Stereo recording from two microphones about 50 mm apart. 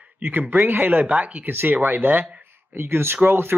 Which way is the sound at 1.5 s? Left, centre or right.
Right.